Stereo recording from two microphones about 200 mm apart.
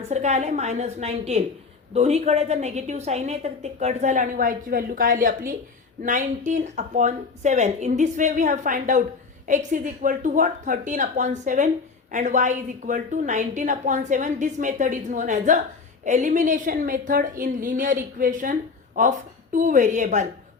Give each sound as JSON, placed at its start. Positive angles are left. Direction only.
{"t": 0.1, "sound": "a woman's voice", "side_deg": -35}